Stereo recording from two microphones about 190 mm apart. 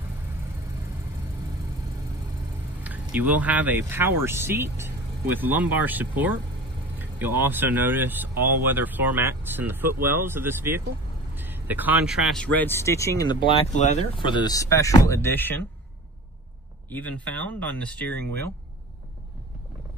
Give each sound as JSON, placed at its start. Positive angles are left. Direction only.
{"t": 2.8, "sound": "speech", "side_deg": -10}
{"t": 13.7, "sound": "speech", "side_deg": 40}
{"t": 14.2, "sound": "speech", "side_deg": 25}
{"t": 16.9, "sound": "speech", "side_deg": 10}